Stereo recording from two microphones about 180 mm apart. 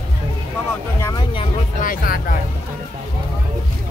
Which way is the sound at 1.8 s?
50° left (ahead or behind).